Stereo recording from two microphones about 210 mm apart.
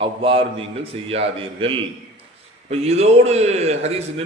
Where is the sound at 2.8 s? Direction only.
30° right (ahead or behind).